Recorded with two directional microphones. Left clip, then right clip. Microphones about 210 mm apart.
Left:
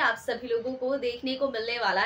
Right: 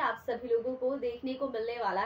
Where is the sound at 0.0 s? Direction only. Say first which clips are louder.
Left 5 dB; 5° left (ahead or behind).